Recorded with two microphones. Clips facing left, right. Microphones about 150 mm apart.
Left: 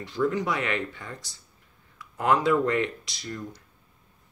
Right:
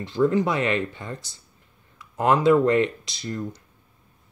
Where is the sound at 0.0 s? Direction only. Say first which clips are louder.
Right 5 dB; 25° right (ahead or behind).